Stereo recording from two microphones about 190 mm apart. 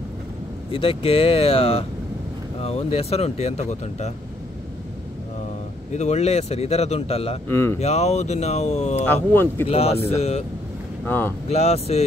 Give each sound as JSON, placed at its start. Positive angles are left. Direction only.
{"t": 0.7, "sound": "speech", "side_deg": 30}
{"t": 5.9, "sound": "speech", "side_deg": 35}
{"t": 7.4, "sound": "speech", "side_deg": 15}
{"t": 7.8, "sound": "speech", "side_deg": 35}
{"t": 9.0, "sound": "speech", "side_deg": 10}
{"t": 9.7, "sound": "speech", "side_deg": 30}
{"t": 11.1, "sound": "speech", "side_deg": 10}
{"t": 11.4, "sound": "speech", "side_deg": 35}